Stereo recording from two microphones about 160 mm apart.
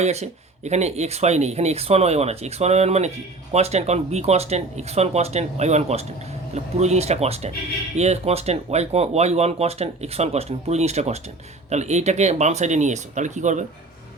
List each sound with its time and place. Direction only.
0.0 s speech: 45° right (ahead or behind)